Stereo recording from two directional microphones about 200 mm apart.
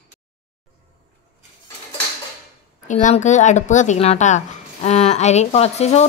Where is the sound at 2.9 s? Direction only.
40° left (ahead or behind).